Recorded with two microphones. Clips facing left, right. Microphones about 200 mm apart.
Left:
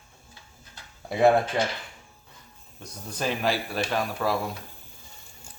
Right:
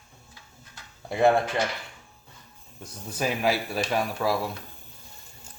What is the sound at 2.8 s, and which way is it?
Speech, 5° right (ahead or behind).